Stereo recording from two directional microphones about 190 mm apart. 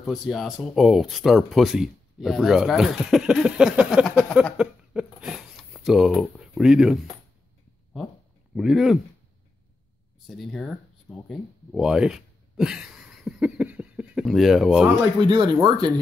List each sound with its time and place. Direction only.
0.0 s speech: centre (ahead or behind)
8.5 s speech: centre (ahead or behind)
10.2 s a sound: centre (ahead or behind)
15.2 s speech: 25° right (ahead or behind)